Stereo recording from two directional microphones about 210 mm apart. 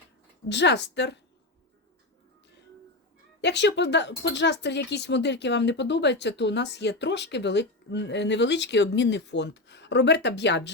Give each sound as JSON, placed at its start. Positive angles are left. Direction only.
{"t": 0.4, "sound": "speech", "side_deg": 55}
{"t": 3.4, "sound": "speech", "side_deg": 55}